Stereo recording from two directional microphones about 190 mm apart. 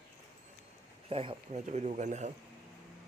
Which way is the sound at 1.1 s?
30° right (ahead or behind).